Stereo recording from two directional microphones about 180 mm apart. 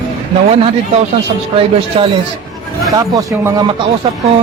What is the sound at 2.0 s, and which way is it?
A man's voice, 30° right (ahead or behind).